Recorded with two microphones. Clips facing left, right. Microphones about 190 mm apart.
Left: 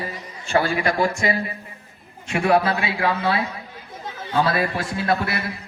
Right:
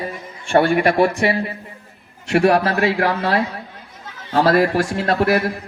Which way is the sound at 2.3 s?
80° right.